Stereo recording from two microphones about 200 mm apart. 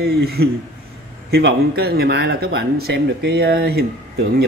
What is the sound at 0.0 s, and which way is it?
Speech, 50° right (ahead or behind).